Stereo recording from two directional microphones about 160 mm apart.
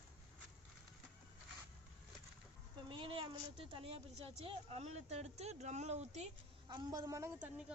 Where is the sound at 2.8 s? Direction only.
30° right (ahead or behind).